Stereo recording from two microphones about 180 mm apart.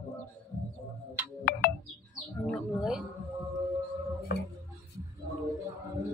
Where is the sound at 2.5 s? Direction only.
5° right (ahead or behind).